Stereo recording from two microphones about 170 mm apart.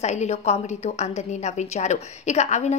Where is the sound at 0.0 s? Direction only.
40° left (ahead or behind).